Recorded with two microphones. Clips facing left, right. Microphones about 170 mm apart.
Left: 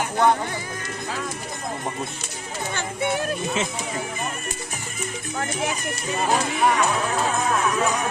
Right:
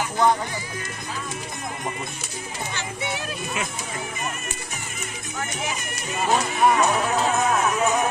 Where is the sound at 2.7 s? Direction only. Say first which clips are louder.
Left 7 dB; 50° left (ahead or behind).